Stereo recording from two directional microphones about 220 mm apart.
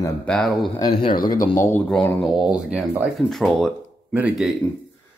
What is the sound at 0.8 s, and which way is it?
Speech, 25° left (ahead or behind).